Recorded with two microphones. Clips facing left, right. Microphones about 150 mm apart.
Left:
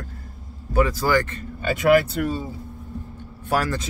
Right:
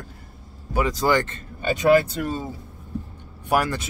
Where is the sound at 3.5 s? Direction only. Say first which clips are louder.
Right 1 dB; 15° right (ahead or behind).